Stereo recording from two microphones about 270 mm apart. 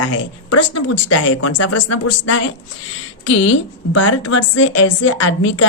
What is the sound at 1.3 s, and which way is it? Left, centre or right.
Speech, left.